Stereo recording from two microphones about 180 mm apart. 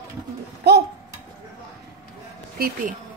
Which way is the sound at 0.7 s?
65° right (ahead or behind).